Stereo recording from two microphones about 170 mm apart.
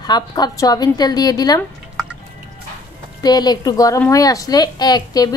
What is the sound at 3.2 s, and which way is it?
A woman's voice, 25° left (ahead or behind).